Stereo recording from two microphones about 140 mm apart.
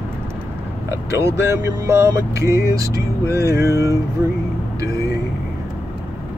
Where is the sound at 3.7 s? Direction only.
20° left (ahead or behind).